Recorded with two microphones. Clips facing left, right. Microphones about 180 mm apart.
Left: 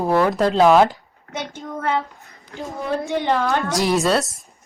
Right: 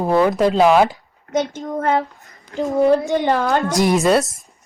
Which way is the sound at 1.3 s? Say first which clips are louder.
Right 8 dB; 40° right (ahead or behind).